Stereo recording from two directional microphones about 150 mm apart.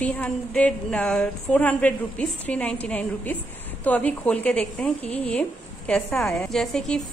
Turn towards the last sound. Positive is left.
turn(degrees=5)  # may be behind; listen again after turning